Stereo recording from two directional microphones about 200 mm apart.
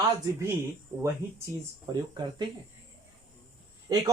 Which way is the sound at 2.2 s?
20° right (ahead or behind).